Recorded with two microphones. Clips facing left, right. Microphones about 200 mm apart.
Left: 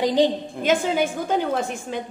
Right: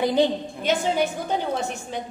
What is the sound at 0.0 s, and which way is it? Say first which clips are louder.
Speech: left 1 dB; 15° left (ahead or behind).